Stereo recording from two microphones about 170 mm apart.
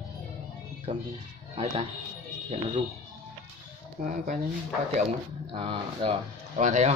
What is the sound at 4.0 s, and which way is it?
Speech, 50° right (ahead or behind).